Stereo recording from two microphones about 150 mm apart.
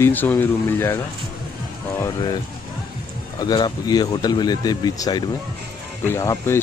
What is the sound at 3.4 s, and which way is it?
Speech, 30° left (ahead or behind).